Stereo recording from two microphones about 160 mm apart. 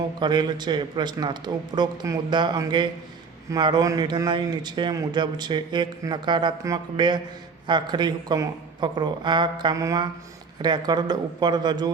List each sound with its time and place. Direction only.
0.2 s a man's voice: 25° right (ahead or behind)